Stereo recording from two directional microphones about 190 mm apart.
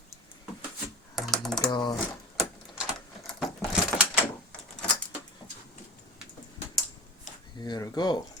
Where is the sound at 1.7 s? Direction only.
25° left (ahead or behind).